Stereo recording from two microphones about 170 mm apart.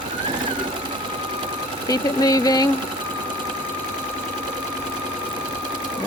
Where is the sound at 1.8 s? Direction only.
20° left (ahead or behind).